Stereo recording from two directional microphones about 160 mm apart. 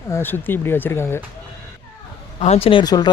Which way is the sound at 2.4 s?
40° left (ahead or behind).